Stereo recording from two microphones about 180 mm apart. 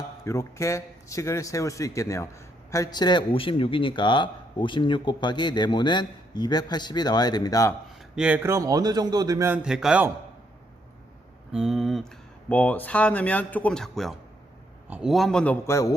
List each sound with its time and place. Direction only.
0.3 s a man's voice: 15° left (ahead or behind)
8.1 s a man's voice: 5° right (ahead or behind)
9.6 s a man's voice: 5° right (ahead or behind)
11.5 s a man's voice: centre (ahead or behind)
15.6 s speech: 15° left (ahead or behind)